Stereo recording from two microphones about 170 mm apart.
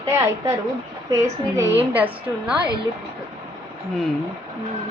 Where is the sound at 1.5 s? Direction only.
10° right (ahead or behind).